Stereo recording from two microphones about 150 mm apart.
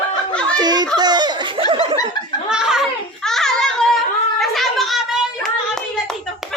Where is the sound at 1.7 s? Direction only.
35° right (ahead or behind).